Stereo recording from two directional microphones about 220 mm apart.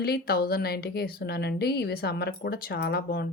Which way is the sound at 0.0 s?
45° left (ahead or behind).